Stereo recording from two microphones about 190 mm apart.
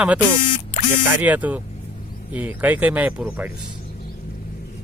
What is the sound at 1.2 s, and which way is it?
Speech, 10° right (ahead or behind).